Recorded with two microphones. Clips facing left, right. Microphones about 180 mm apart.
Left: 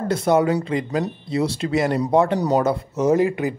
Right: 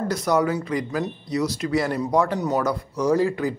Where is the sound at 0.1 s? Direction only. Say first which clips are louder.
Left 5 dB; 25° left (ahead or behind).